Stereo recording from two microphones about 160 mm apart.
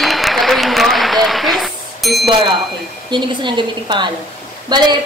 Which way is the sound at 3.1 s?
30° right (ahead or behind).